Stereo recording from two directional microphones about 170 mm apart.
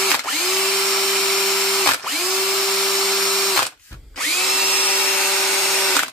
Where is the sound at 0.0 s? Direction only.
Centre (ahead or behind).